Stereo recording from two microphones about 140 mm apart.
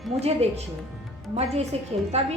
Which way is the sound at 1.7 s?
50° right (ahead or behind).